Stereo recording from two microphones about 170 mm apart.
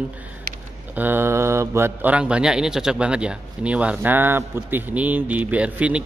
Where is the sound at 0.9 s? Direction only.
10° right (ahead or behind).